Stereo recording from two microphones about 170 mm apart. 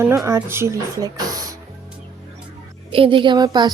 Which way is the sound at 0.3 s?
15° right (ahead or behind).